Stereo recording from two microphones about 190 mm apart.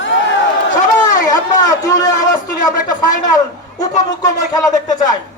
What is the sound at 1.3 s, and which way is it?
A man's voice, 20° left (ahead or behind).